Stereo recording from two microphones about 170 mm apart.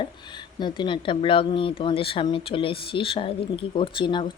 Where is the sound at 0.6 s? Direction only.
30° left (ahead or behind).